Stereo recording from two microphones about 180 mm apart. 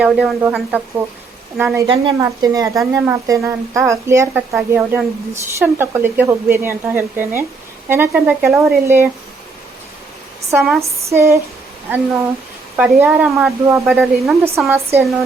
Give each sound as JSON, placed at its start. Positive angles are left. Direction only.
{"t": 0.0, "sound": "speech", "side_deg": -10}
{"t": 1.9, "sound": "speech", "side_deg": -25}
{"t": 10.5, "sound": "speech", "side_deg": -10}
{"t": 12.7, "sound": "speech", "side_deg": -5}
{"t": 13.8, "sound": "speech", "side_deg": 0}
{"t": 14.7, "sound": "speech", "side_deg": -15}